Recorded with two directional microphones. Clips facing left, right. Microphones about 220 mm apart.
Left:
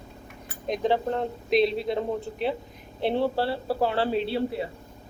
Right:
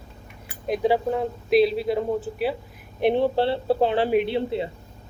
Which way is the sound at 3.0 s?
15° right (ahead or behind).